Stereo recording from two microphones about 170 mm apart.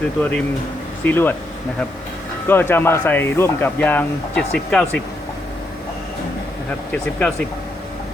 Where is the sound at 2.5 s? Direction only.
10° left (ahead or behind).